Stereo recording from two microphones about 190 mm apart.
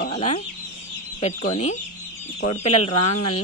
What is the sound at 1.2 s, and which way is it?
Speech, 35° left (ahead or behind).